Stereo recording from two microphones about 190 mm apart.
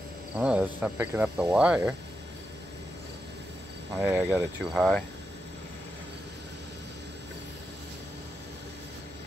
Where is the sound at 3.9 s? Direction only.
5° right (ahead or behind).